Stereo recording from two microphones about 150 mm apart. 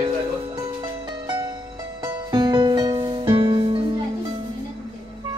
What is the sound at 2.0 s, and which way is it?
Music, 30° right (ahead or behind).